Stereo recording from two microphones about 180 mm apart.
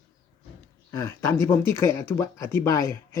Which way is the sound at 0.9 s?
15° left (ahead or behind).